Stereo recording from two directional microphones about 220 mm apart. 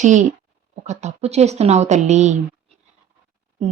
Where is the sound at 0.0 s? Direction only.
35° right (ahead or behind).